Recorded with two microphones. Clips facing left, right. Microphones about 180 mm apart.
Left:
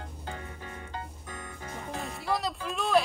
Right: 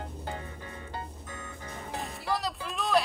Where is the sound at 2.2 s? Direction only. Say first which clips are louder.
Left 2 dB; centre (ahead or behind).